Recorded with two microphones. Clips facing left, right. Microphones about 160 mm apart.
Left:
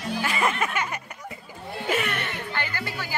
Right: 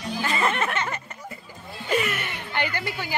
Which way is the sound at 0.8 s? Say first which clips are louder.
Even; 10° left (ahead or behind).